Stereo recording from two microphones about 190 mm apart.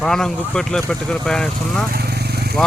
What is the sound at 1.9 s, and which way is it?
Vehicle, 55° right (ahead or behind).